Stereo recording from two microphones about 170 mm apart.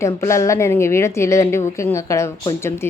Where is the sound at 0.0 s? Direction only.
15° left (ahead or behind).